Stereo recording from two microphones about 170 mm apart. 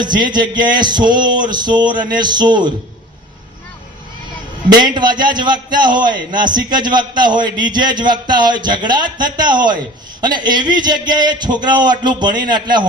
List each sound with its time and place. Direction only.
0.0 s a man's voice: 25° right (ahead or behind)
4.8 s a man's voice: 25° right (ahead or behind)